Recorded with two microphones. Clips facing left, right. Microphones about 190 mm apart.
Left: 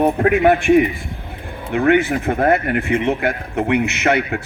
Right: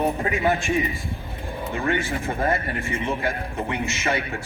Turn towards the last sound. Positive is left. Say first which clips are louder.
# left 8 dB
turn(degrees=65)  # may be behind; listen again after turning